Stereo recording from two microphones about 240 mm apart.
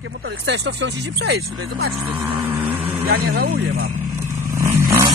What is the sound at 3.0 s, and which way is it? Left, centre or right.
Speech, right.